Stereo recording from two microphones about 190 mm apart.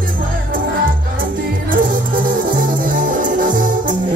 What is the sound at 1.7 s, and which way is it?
Music, 45° right (ahead or behind).